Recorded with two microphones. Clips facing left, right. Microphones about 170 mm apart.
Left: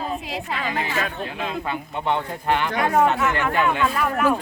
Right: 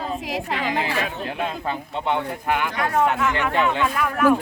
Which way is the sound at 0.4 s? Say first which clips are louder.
Right 3 dB; 70° right (ahead or behind).